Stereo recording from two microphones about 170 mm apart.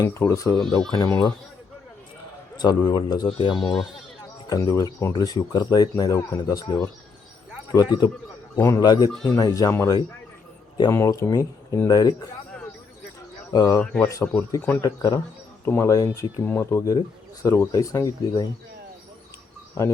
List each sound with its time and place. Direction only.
0.0 s speech: 20° left (ahead or behind)
2.6 s speech: 25° left (ahead or behind)
4.4 s speech: 20° left (ahead or behind)
13.5 s speech: 20° left (ahead or behind)
13.8 s speech: 5° left (ahead or behind)
14.1 s speech: 20° left (ahead or behind)